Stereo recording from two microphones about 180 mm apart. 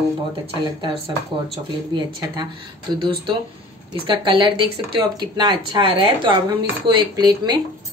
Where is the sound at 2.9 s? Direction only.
25° right (ahead or behind).